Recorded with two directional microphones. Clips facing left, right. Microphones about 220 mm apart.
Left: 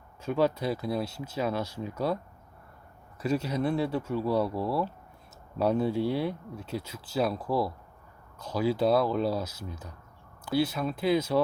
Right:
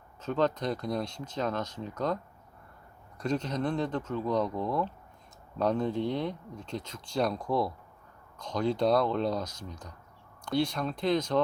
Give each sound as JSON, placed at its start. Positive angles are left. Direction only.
{"t": 0.2, "sound": "speech", "side_deg": 10}
{"t": 3.2, "sound": "speech", "side_deg": 10}